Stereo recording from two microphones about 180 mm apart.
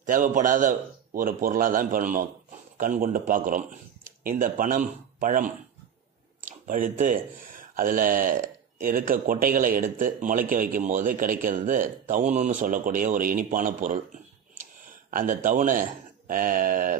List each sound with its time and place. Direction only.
0.0 s speech: 45° right (ahead or behind)
15.0 s speech: 50° right (ahead or behind)